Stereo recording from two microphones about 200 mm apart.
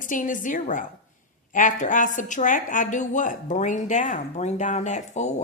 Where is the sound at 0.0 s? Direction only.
40° left (ahead or behind).